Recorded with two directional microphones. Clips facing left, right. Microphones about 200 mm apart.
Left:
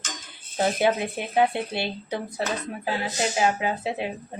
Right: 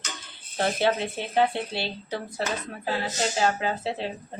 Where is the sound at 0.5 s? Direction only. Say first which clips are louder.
Left 2 dB; 15° left (ahead or behind).